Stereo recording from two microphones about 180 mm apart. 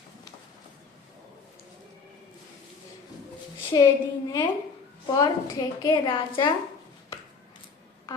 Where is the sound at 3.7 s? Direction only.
20° left (ahead or behind).